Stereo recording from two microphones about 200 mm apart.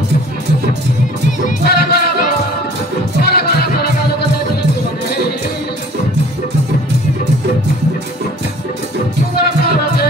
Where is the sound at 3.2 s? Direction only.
50° left (ahead or behind).